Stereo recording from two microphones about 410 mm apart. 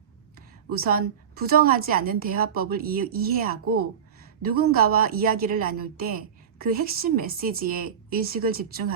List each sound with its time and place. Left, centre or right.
0.3 s a woman's voice: right
4.4 s a woman's voice: right